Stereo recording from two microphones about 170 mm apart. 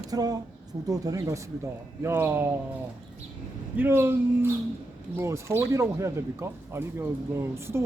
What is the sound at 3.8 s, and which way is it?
Speech, 15° right (ahead or behind).